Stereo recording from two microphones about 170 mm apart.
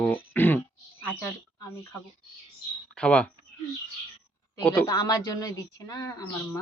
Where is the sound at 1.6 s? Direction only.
15° left (ahead or behind).